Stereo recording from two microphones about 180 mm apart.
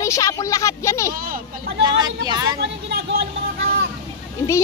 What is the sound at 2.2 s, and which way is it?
Speech, 20° right (ahead or behind).